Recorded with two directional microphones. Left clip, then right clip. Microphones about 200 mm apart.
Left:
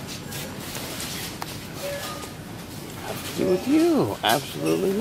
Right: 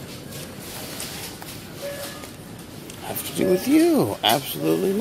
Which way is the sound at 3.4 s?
30° right (ahead or behind).